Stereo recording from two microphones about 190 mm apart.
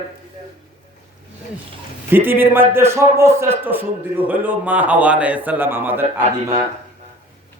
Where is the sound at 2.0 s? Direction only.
10° right (ahead or behind).